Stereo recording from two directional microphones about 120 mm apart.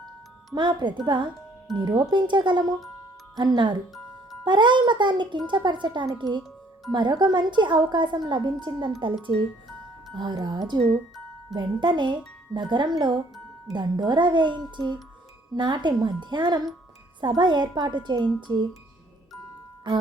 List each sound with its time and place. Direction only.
0.5 s a woman's voice: 40° right (ahead or behind)